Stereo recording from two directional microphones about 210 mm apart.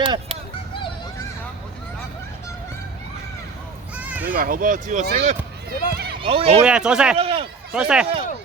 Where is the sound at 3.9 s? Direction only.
5° right (ahead or behind).